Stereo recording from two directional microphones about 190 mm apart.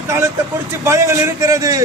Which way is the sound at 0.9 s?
15° right (ahead or behind).